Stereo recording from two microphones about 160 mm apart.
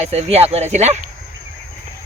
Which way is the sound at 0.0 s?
40° right (ahead or behind).